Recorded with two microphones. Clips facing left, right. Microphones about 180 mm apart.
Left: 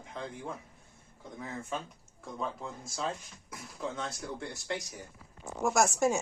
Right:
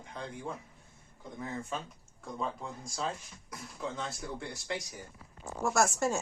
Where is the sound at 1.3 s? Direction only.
Centre (ahead or behind).